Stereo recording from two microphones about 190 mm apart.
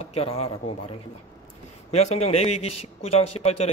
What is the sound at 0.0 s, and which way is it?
Speech, 30° left (ahead or behind).